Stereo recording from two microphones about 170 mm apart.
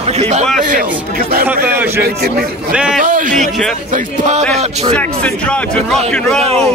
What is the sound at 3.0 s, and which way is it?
Speech, 50° right (ahead or behind).